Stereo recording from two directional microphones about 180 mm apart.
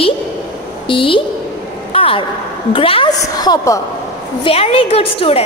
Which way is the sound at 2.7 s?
30° left (ahead or behind).